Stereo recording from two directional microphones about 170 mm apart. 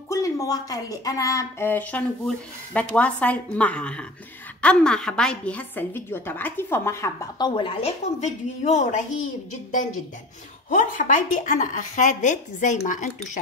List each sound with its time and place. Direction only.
0.1 s a woman's voice: 20° left (ahead or behind); by 13.1 s 50° left (ahead or behind)